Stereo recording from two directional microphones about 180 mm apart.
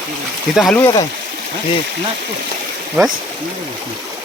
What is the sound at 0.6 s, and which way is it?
Speech, centre (ahead or behind).